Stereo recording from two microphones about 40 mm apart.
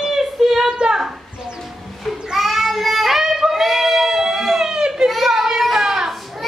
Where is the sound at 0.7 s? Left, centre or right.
Right.